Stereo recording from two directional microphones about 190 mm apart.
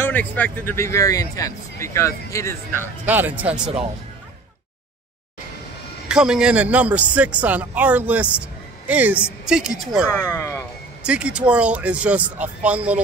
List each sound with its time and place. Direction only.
0.0 s speech: 10° left (ahead or behind)
2.7 s a man's voice: 10° right (ahead or behind)
6.0 s a man's voice: 5° right (ahead or behind)
10.1 s speech: 20° left (ahead or behind)
11.0 s a man's voice: 5° right (ahead or behind)